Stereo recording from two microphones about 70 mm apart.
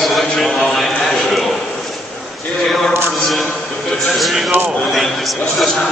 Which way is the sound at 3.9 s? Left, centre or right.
Centre.